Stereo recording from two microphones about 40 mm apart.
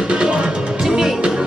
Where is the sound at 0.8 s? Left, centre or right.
Centre.